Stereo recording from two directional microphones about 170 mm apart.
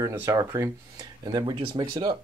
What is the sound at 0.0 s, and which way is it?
Speech, 15° right (ahead or behind).